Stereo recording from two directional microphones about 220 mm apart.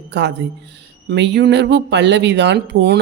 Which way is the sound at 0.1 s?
50° right (ahead or behind).